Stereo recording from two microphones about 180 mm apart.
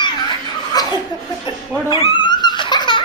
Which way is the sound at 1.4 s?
25° left (ahead or behind).